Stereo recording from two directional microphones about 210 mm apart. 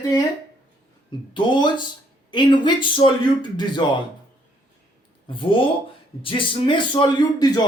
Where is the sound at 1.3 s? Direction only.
20° left (ahead or behind).